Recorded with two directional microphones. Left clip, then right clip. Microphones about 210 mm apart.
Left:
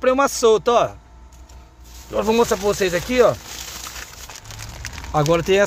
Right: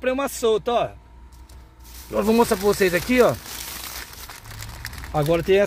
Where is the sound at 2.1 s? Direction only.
5° right (ahead or behind).